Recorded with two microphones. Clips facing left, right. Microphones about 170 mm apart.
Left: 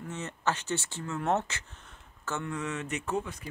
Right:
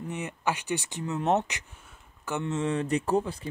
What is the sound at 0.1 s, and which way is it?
Speech, 10° right (ahead or behind).